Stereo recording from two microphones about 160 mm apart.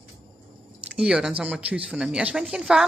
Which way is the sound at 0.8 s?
5° right (ahead or behind).